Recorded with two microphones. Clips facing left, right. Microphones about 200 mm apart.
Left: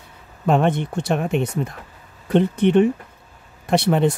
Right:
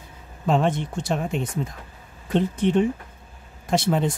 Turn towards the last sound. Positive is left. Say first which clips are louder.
# left 4 dB
turn(degrees=65)  # may be behind; listen again after turning